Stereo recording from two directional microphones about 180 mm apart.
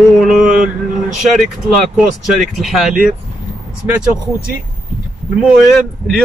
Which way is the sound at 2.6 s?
Centre (ahead or behind).